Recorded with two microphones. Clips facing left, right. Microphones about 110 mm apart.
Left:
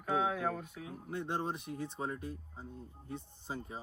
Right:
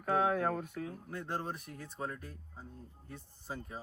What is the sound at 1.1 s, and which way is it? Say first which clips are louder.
Speech: left 5 dB; 20° left (ahead or behind).